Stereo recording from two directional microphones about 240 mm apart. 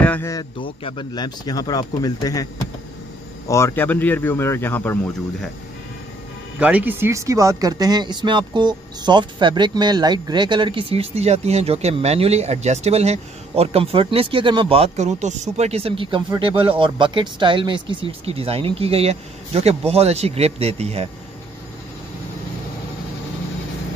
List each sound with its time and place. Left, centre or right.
0.0 s speech: centre
6.6 s speech: centre; by 21.1 s right